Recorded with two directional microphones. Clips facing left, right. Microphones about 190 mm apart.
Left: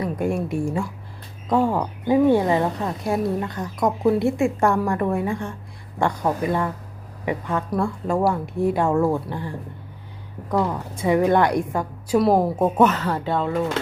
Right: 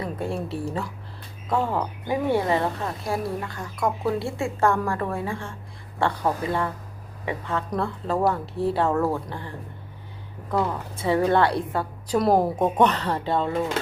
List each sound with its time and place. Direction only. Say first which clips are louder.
0.2 s speech: left 5 dB; 15° left (ahead or behind)
10.9 s speech: left 3 dB; 15° left (ahead or behind)
12.1 s speech: left 2 dB; centre (ahead or behind)